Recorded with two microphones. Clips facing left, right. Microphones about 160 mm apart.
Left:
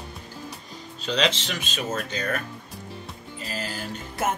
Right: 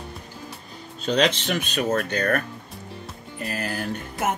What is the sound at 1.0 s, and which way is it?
Speech, 55° right (ahead or behind).